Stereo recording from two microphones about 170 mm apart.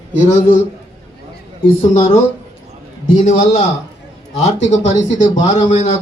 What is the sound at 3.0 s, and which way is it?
A man's voice, 45° left (ahead or behind).